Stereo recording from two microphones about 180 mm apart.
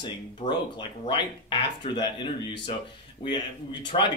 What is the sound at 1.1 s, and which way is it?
Speech, 25° left (ahead or behind).